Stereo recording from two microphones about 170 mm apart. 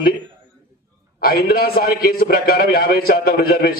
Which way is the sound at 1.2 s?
60° left (ahead or behind).